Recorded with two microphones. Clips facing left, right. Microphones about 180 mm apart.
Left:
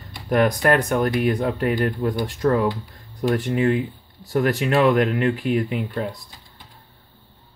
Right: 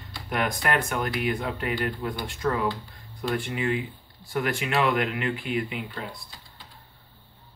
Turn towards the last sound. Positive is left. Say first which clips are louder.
# left 9 dB
turn(degrees=40)  # may be behind; listen again after turning